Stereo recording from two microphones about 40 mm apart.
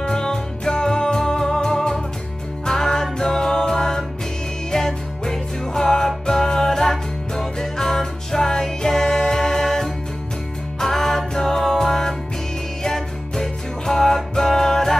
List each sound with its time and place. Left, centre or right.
0.0 s music: centre